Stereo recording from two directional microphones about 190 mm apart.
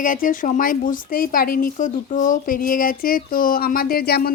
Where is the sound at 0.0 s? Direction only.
45° left (ahead or behind).